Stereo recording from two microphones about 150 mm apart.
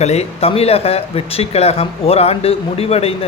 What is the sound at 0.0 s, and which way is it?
Speech, 45° left (ahead or behind).